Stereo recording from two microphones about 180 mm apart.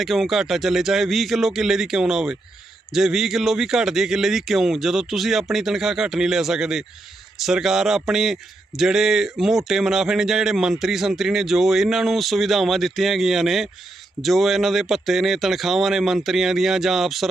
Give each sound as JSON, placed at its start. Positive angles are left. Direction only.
{"t": 0.0, "sound": "speech", "side_deg": 0}